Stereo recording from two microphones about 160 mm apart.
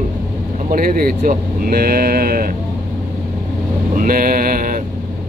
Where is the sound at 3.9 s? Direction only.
60° right (ahead or behind).